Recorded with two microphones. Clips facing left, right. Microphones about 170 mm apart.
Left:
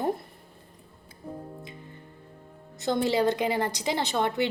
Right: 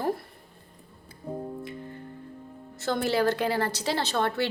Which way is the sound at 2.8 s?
20° left (ahead or behind).